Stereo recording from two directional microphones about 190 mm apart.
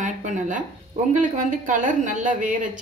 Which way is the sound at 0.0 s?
40° right (ahead or behind).